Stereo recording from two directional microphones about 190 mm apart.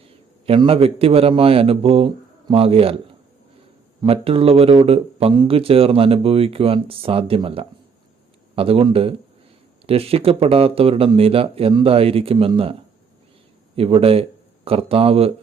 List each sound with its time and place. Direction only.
0.4 s speech: 30° right (ahead or behind)
4.0 s speech: 30° right (ahead or behind)
13.7 s speech: 30° right (ahead or behind)